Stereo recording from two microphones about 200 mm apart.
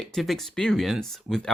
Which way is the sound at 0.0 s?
Centre (ahead or behind).